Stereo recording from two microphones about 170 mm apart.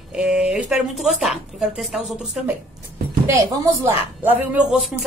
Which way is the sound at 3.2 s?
20° right (ahead or behind).